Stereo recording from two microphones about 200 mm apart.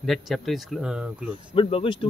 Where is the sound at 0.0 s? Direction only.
Centre (ahead or behind).